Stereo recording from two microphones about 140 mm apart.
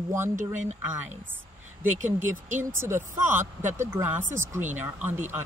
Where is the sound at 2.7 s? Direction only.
20° right (ahead or behind).